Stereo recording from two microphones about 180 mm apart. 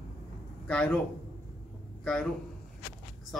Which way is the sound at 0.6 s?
5° left (ahead or behind).